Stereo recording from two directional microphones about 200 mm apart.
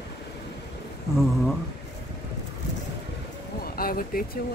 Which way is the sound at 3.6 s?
45° left (ahead or behind).